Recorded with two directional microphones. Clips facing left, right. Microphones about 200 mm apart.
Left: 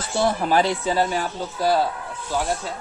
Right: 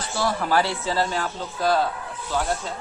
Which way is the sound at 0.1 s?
20° left (ahead or behind).